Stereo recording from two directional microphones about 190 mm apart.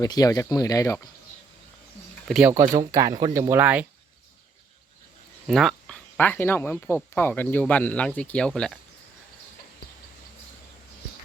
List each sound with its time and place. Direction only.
0.0 s speech: 20° left (ahead or behind)
2.5 s speech: 15° right (ahead or behind)
5.5 s speech: centre (ahead or behind)